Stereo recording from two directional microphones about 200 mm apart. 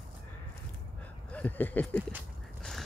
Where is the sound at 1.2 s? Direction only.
5° left (ahead or behind).